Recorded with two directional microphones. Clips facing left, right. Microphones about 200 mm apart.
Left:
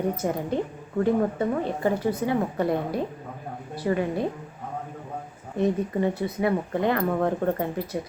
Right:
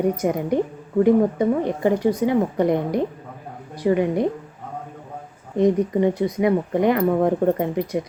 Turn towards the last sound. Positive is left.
turn(degrees=-15)  # may be behind; listen again after turning